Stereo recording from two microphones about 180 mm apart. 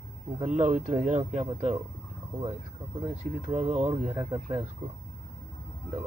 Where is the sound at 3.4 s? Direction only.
35° right (ahead or behind).